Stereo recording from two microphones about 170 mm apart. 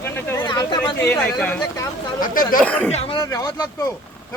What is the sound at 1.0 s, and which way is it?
Speech, 5° left (ahead or behind).